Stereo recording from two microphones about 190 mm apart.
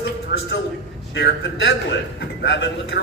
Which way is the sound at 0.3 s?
65° left (ahead or behind).